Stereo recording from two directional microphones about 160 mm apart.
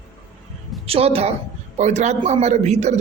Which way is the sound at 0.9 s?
40° right (ahead or behind).